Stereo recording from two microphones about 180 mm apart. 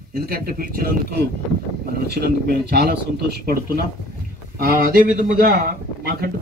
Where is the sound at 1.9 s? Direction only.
65° right (ahead or behind).